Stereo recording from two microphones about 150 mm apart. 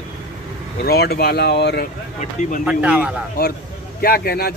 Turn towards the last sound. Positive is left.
turn(degrees=90)